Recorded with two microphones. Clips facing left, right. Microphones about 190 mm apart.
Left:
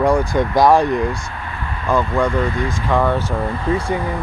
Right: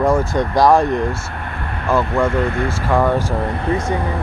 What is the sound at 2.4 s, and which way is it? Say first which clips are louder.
Speech: right 1 dB; 60° right (ahead or behind).